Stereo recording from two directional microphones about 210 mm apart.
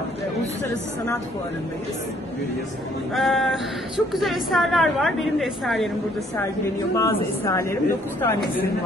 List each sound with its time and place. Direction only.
3.2 s speech: centre (ahead or behind)
7.0 s a woman's voice: 15° left (ahead or behind)